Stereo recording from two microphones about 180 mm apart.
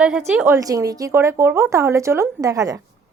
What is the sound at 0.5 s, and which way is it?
Speech, 20° right (ahead or behind).